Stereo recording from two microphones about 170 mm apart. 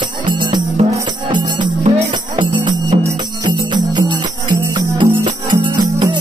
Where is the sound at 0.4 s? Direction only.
25° right (ahead or behind).